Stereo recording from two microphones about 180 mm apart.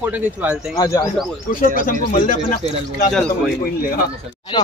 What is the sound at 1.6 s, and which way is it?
Speech, 50° left (ahead or behind).